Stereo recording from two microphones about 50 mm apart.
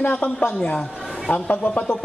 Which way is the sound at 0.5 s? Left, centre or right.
Left.